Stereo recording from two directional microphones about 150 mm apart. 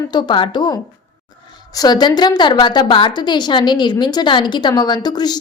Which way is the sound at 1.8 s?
30° left (ahead or behind).